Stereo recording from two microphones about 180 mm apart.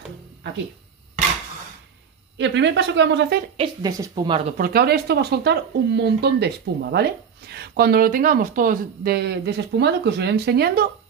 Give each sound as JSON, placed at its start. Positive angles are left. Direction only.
{"t": 2.3, "sound": "speech", "side_deg": -85}
{"t": 3.5, "sound": "speech", "side_deg": -25}
{"t": 4.6, "sound": "speech", "side_deg": -60}